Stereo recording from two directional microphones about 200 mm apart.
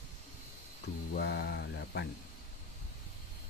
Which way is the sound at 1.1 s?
55° left (ahead or behind).